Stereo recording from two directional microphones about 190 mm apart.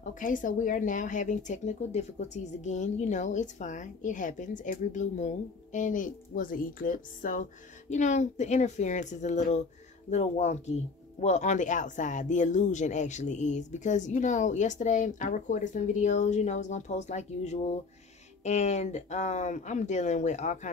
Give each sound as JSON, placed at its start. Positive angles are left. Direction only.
{"t": 0.2, "sound": "speech", "side_deg": 45}